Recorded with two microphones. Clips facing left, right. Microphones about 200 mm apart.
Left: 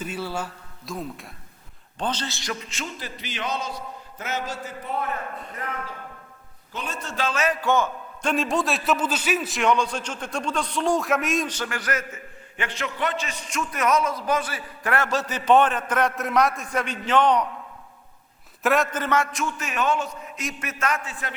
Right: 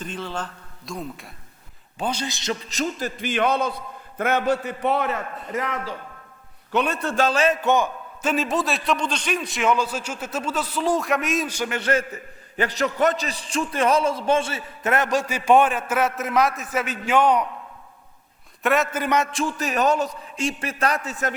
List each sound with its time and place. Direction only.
0.0 s a man's voice: 10° left (ahead or behind)
2.0 s a man's voice: 10° right (ahead or behind)
2.6 s a man's voice: 40° right (ahead or behind); by 6.0 s 90° right
6.7 s a man's voice: 65° right (ahead or behind)
7.3 s a man's voice: 30° right (ahead or behind)
8.2 s a man's voice: 5° right (ahead or behind)
11.8 s a man's voice: 30° right (ahead or behind); by 17.4 s 10° right (ahead or behind)
18.6 s a man's voice: centre (ahead or behind)
19.3 s a man's voice: 30° right (ahead or behind)